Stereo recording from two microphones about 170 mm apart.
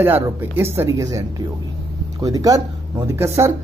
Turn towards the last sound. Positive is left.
turn(degrees=-15)  # may be behind; listen again after turning